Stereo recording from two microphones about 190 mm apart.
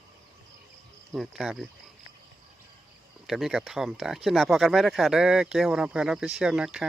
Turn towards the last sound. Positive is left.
turn(degrees=0)  # may be behind; listen again after turning